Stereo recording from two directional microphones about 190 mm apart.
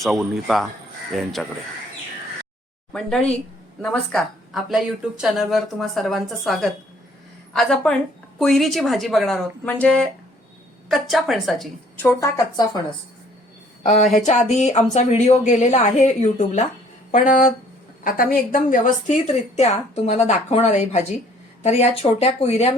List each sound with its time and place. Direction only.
0.0 s speech: centre (ahead or behind)
2.9 s a woman's voice: 5° left (ahead or behind)
12.0 s a woman's voice: 20° left (ahead or behind)
13.8 s a woman's voice: 35° left (ahead or behind)
18.5 s a woman's voice: 45° left (ahead or behind)